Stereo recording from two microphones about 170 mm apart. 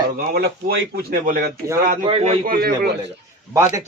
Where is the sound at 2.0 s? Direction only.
35° right (ahead or behind).